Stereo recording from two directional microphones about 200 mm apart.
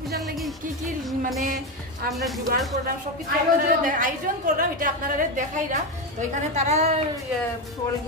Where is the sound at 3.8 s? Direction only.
40° right (ahead or behind).